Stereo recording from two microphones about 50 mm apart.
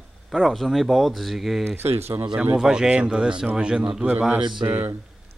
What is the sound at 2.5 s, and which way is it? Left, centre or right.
Speech, centre.